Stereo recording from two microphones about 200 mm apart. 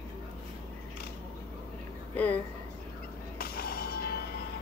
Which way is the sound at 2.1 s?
10° left (ahead or behind).